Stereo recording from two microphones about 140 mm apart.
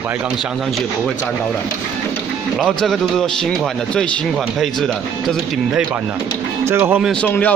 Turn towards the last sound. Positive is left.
turn(degrees=10)  # may be behind; listen again after turning